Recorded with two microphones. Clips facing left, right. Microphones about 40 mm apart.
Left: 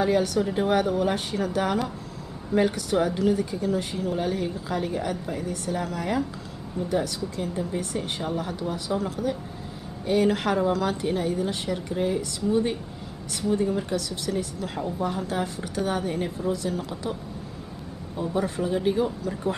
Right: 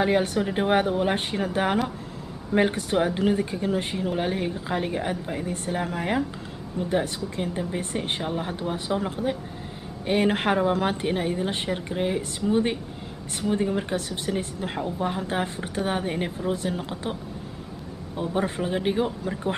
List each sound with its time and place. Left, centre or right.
0.0 s speech: right